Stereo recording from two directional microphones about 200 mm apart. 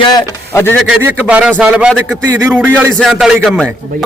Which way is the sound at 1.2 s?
5° right (ahead or behind).